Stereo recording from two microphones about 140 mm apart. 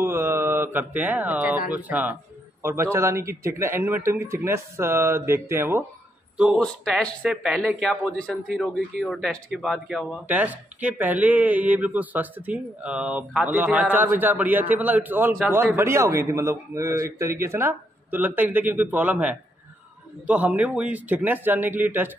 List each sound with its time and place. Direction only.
0.0 s a sound: 15° right (ahead or behind)
1.7 s a man's voice: 10° right (ahead or behind)
6.3 s speech: centre (ahead or behind)
10.2 s a man's voice: 10° right (ahead or behind)